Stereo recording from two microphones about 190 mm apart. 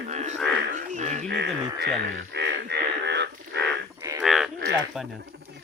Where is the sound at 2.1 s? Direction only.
65° right (ahead or behind).